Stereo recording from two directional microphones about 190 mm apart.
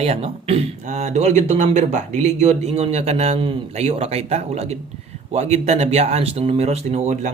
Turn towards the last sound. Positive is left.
turn(degrees=-35)  # may be behind; listen again after turning